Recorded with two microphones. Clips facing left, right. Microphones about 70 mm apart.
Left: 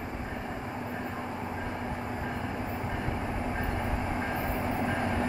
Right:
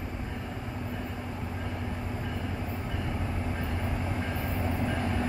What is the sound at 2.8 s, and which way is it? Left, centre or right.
Train, left.